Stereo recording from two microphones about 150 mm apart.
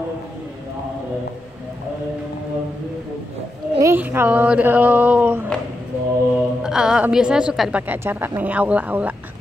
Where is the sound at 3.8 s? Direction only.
15° right (ahead or behind).